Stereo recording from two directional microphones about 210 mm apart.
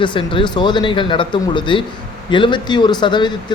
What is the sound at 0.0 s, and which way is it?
Speech, 25° left (ahead or behind).